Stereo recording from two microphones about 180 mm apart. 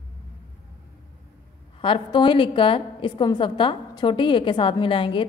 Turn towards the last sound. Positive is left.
turn(degrees=30)  # may be behind; listen again after turning